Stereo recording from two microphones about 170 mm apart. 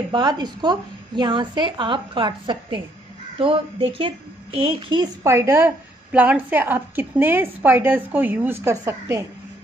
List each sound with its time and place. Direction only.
0.1 s a woman's voice: 25° right (ahead or behind)